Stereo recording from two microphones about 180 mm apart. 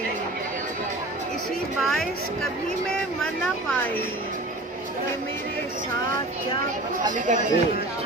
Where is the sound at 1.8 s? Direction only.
Centre (ahead or behind).